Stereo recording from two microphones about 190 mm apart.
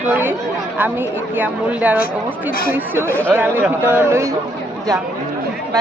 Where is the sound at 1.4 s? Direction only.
10° right (ahead or behind).